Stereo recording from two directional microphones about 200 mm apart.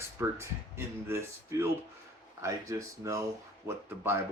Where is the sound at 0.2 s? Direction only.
15° right (ahead or behind).